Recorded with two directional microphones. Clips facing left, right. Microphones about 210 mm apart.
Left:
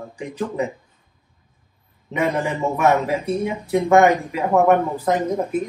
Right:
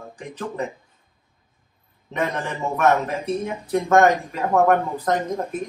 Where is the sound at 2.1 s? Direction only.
10° left (ahead or behind).